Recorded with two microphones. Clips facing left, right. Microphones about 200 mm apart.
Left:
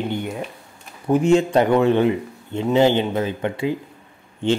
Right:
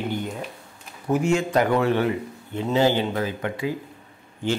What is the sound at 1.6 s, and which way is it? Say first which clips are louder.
A man's voice: left 4 dB; 20° left (ahead or behind).